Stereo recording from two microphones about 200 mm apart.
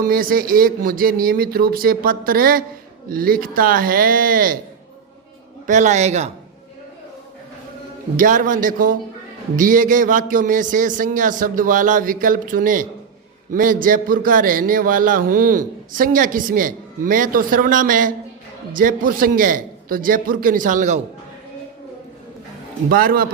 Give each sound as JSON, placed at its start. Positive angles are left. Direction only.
{"t": 0.0, "sound": "a man's voice", "side_deg": -45}
{"t": 5.6, "sound": "a man's voice", "side_deg": -35}
{"t": 8.1, "sound": "a man's voice", "side_deg": -40}
{"t": 22.9, "sound": "a man's voice", "side_deg": -45}